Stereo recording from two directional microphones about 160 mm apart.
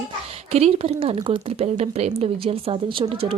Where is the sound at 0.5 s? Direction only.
40° right (ahead or behind).